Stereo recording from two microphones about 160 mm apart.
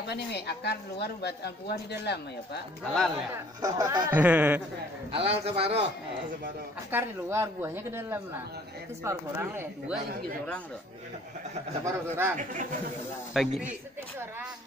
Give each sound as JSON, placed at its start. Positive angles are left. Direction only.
{"t": 0.1, "sound": "speech", "side_deg": 90}
{"t": 2.8, "sound": "a man's voice", "side_deg": 5}
{"t": 3.6, "sound": "speech", "side_deg": -25}
{"t": 4.1, "sound": "a woman's voice", "side_deg": -10}
{"t": 5.1, "sound": "a man's voice", "side_deg": -40}
{"t": 6.9, "sound": "a woman's voice", "side_deg": -15}
{"t": 11.8, "sound": "a woman's voice", "side_deg": -15}
{"t": 13.3, "sound": "a man's voice", "side_deg": 0}